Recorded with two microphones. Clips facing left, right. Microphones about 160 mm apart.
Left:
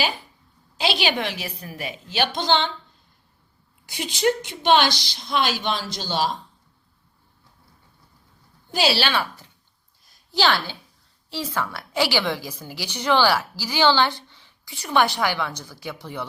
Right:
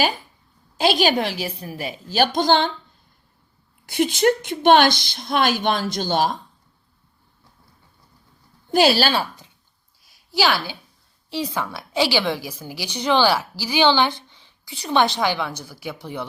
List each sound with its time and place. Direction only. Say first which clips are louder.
0.8 s a woman's voice: right 5 dB; 45° right (ahead or behind)
3.8 s a woman's voice: right 4 dB; 55° right (ahead or behind)
8.7 s a woman's voice: right 5 dB; 50° right (ahead or behind)
10.0 s a sound: right 1 dB; 5° right (ahead or behind)
11.3 s a woman's voice: right 2 dB; 15° right (ahead or behind)